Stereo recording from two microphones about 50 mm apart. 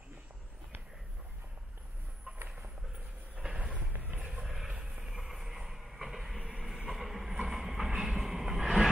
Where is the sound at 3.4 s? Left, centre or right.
Centre.